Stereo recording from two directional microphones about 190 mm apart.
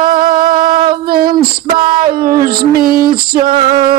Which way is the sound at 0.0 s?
25° right (ahead or behind).